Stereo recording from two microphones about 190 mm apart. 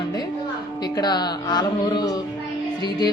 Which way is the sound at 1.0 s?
20° left (ahead or behind).